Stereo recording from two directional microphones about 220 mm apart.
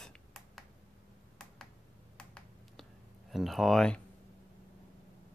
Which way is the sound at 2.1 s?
Centre (ahead or behind).